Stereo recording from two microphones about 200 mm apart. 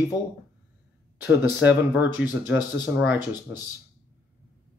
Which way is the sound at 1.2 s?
10° right (ahead or behind).